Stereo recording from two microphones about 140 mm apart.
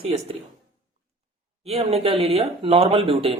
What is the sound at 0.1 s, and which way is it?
Speech, 45° right (ahead or behind).